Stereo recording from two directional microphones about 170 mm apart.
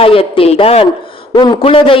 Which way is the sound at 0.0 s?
35° left (ahead or behind).